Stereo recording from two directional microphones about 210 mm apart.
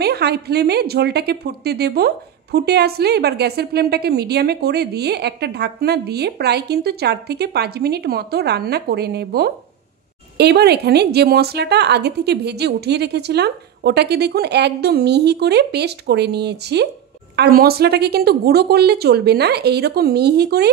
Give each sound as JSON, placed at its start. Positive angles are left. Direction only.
{"t": 0.0, "sound": "a woman's voice", "side_deg": -50}